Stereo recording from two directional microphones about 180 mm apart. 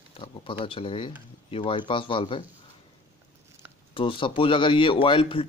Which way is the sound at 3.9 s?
30° left (ahead or behind).